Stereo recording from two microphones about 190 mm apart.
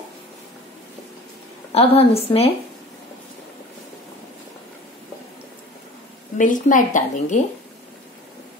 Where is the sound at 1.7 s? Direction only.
30° left (ahead or behind).